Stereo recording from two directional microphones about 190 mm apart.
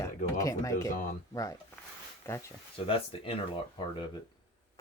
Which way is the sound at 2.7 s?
30° left (ahead or behind).